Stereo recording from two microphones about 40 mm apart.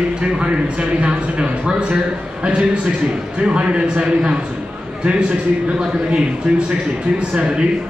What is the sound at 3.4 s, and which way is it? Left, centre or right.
Speech, right.